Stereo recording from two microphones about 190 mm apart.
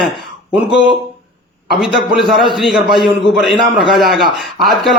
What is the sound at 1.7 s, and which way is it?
A man's voice, centre (ahead or behind).